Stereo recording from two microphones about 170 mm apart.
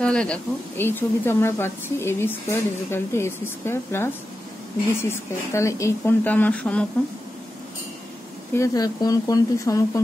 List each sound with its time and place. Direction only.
0.0 s a woman's voice: 5° left (ahead or behind)
8.5 s speech: 20° left (ahead or behind)